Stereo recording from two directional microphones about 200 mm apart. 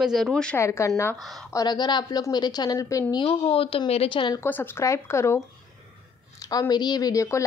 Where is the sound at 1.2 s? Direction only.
Centre (ahead or behind).